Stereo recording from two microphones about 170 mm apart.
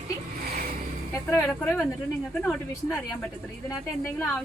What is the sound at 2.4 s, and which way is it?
Speech, 10° left (ahead or behind).